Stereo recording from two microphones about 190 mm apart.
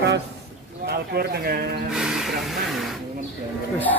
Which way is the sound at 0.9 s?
55° right (ahead or behind).